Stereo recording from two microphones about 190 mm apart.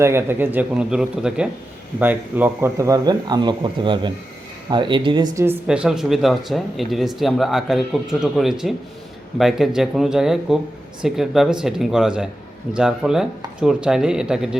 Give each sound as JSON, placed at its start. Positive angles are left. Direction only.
{"t": 0.0, "sound": "speech", "side_deg": -10}
{"t": 5.5, "sound": "speech", "side_deg": -5}